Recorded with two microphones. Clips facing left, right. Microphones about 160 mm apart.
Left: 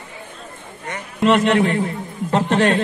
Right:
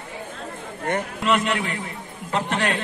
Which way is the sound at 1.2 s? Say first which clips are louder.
Left 9 dB; 40° left (ahead or behind).